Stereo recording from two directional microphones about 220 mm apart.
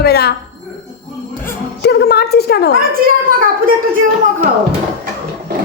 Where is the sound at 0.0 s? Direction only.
45° left (ahead or behind).